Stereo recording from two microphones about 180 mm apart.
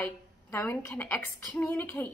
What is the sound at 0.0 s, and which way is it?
A woman's voice, 10° left (ahead or behind).